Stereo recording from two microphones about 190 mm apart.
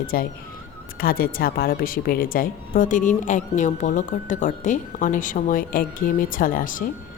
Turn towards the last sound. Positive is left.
turn(degrees=45)  # may be behind; listen again after turning